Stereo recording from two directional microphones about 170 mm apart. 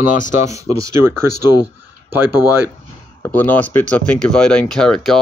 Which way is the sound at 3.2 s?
10° left (ahead or behind).